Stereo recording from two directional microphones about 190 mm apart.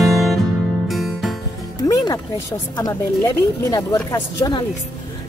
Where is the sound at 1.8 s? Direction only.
20° left (ahead or behind).